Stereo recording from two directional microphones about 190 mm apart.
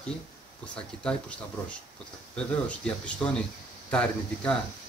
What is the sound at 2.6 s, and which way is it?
Speech, 5° left (ahead or behind).